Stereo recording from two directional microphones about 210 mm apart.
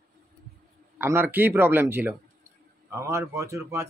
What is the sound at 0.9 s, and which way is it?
Speech, 10° right (ahead or behind).